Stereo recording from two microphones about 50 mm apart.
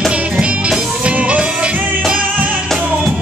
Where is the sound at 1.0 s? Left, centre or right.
Right.